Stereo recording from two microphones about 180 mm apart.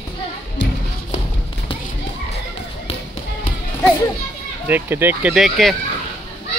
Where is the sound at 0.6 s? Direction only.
90° left.